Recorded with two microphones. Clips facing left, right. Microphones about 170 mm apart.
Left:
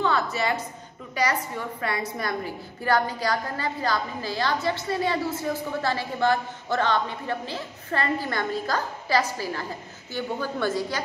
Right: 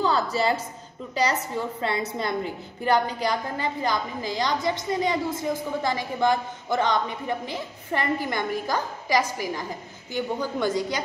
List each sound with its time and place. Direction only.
0.0 s a woman's voice: 30° right (ahead or behind); by 10.7 s 15° right (ahead or behind)